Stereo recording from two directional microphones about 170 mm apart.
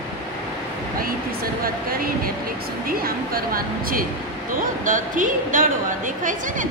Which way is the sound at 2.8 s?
60° right (ahead or behind).